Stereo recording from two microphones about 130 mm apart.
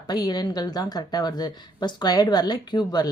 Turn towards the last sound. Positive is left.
turn(degrees=35)  # may be behind; listen again after turning